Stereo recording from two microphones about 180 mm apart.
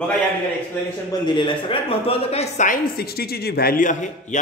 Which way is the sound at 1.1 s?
25° left (ahead or behind).